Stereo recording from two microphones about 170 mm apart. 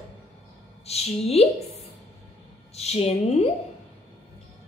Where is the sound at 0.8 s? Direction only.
40° left (ahead or behind).